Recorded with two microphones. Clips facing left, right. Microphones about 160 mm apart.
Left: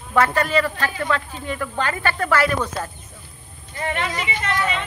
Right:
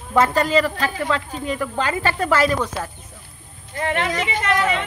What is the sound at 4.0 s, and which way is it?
Speech, 70° right (ahead or behind).